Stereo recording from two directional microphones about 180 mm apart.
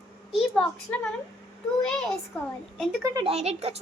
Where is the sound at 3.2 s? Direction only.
35° right (ahead or behind).